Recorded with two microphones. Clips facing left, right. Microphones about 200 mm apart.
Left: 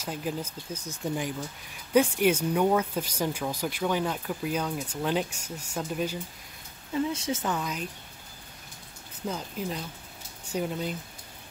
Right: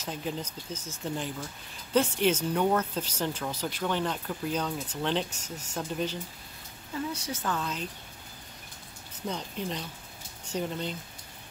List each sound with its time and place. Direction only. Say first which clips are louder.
0.0 s speech: left 2 dB; 5° left (ahead or behind)
7.1 s speech: left 3 dB; 25° left (ahead or behind)
9.3 s speech: left 1 dB; 5° left (ahead or behind)